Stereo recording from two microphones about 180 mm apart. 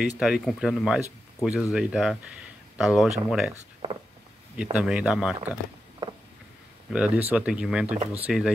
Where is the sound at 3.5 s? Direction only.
30° right (ahead or behind).